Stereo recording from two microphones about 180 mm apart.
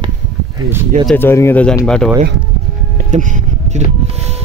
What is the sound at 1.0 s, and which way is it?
Speech, 10° left (ahead or behind).